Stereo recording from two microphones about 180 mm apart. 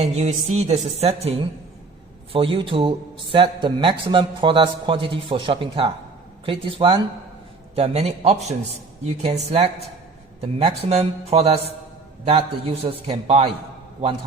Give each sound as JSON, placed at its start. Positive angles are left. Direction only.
{"t": 0.0, "sound": "a man's voice", "side_deg": -35}
{"t": 10.4, "sound": "a man's voice", "side_deg": -35}